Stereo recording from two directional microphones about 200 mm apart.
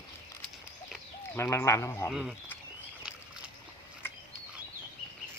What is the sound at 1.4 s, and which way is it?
Speech, 15° left (ahead or behind).